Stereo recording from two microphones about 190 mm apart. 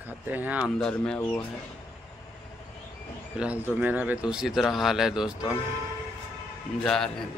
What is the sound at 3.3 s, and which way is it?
Speech, 5° right (ahead or behind).